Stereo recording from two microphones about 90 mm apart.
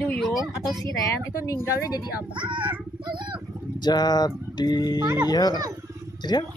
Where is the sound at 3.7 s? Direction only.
50° left (ahead or behind).